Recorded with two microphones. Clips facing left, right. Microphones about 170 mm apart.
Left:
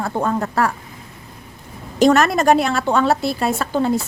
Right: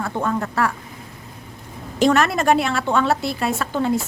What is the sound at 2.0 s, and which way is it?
A woman's voice, 40° left (ahead or behind).